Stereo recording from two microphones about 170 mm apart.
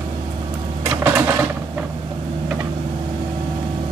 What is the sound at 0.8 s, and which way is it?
Printer, 10° right (ahead or behind).